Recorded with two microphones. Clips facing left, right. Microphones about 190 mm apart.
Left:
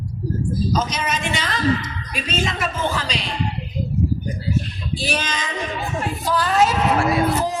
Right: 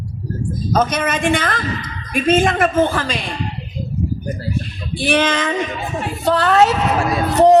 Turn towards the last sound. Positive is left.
turn(degrees=-70)  # may be behind; listen again after turning